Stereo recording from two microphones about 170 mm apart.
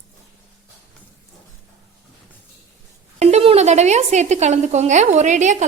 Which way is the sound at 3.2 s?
40° right (ahead or behind).